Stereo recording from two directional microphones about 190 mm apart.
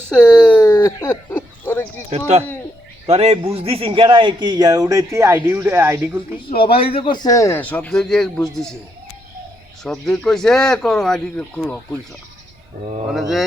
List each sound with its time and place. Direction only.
0.1 s a sound: 5° left (ahead or behind)
2.0 s speech: 35° right (ahead or behind); by 6.2 s 10° right (ahead or behind)
6.7 s a man's voice: 30° left (ahead or behind); by 8.7 s centre (ahead or behind)
9.8 s speech: 5° left (ahead or behind)
13.1 s speech: centre (ahead or behind)